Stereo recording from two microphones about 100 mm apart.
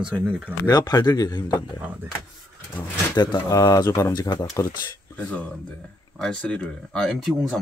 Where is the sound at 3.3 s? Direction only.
35° left (ahead or behind).